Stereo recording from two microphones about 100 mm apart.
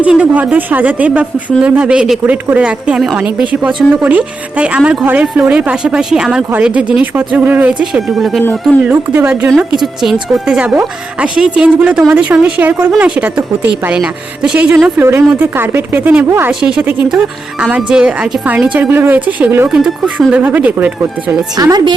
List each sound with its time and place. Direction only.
0.0 s speech: 15° right (ahead or behind)
8.8 s speech: 15° right (ahead or behind)
9.6 s speech: 5° right (ahead or behind)
14.9 s speech: 20° right (ahead or behind)
16.5 s speech: 10° right (ahead or behind)
21.5 s a woman's voice: 40° right (ahead or behind)